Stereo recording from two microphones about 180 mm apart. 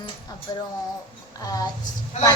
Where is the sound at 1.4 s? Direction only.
20° left (ahead or behind).